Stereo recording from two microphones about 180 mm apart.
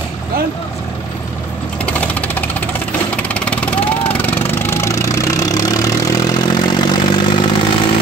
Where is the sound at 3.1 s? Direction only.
5° left (ahead or behind); by 7.4 s 25° left (ahead or behind).